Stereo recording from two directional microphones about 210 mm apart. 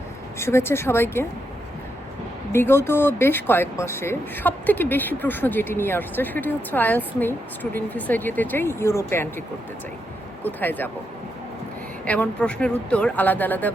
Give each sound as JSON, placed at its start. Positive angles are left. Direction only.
{"t": 0.3, "sound": "speech", "side_deg": 10}
{"t": 2.5, "sound": "speech", "side_deg": 10}
{"t": 10.4, "sound": "speech", "side_deg": 10}
{"t": 12.0, "sound": "speech", "side_deg": 5}